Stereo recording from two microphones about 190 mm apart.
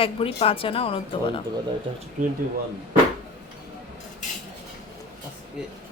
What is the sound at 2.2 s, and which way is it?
Speech, 45° right (ahead or behind).